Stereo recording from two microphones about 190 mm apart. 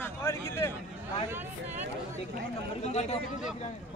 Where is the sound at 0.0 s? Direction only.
15° left (ahead or behind).